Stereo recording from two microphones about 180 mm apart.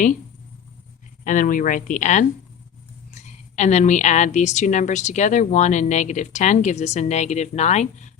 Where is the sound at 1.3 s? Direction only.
45° left (ahead or behind).